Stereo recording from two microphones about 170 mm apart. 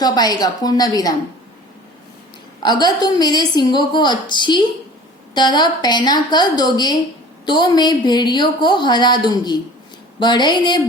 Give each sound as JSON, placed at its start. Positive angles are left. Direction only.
{"t": 0.0, "sound": "a woman's voice", "side_deg": 25}
{"t": 2.8, "sound": "a woman's voice", "side_deg": 25}